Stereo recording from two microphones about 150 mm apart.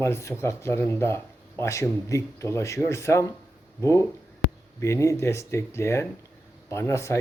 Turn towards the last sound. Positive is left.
turn(degrees=20)  # may be behind; listen again after turning